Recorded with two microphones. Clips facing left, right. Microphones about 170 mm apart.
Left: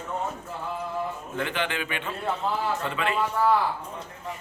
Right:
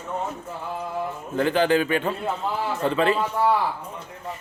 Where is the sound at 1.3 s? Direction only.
35° right (ahead or behind).